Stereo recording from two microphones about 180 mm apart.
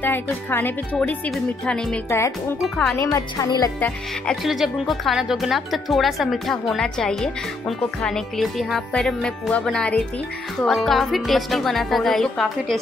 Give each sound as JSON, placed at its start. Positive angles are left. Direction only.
{"t": 0.0, "sound": "speech", "side_deg": 10}
{"t": 3.0, "sound": "a woman's voice", "side_deg": 20}
{"t": 3.8, "sound": "speech", "side_deg": 0}